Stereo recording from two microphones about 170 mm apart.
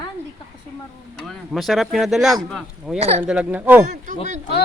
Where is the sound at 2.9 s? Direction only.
35° right (ahead or behind).